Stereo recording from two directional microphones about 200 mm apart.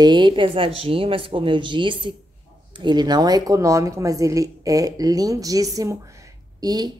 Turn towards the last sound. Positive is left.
turn(degrees=-20)  # may be behind; listen again after turning